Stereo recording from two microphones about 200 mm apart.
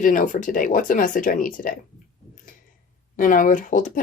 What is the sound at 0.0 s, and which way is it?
Speech, 40° left (ahead or behind).